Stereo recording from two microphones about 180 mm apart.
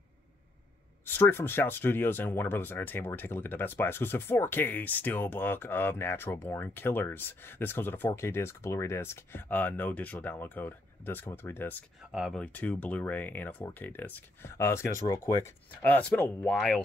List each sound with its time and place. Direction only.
1.0 s speech: 10° left (ahead or behind)
12.0 s speech: centre (ahead or behind)